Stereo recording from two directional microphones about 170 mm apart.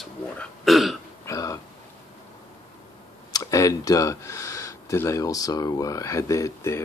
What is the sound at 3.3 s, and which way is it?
Speech, 20° left (ahead or behind).